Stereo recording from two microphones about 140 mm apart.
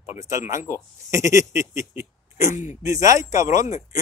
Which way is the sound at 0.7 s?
20° right (ahead or behind).